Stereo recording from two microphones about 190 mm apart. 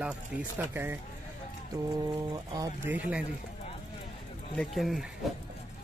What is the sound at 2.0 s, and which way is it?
Speech, 20° right (ahead or behind).